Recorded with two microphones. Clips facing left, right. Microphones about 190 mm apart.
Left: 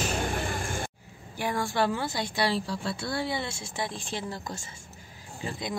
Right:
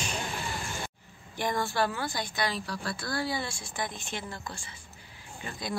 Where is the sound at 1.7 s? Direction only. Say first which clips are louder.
Left 2 dB; 25° left (ahead or behind).